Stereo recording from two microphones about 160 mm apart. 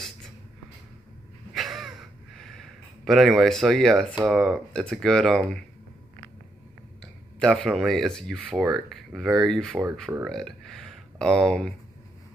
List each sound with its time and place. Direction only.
1.5 s gasp: centre (ahead or behind)
4.3 s speech: centre (ahead or behind)
7.3 s speech: 5° left (ahead or behind)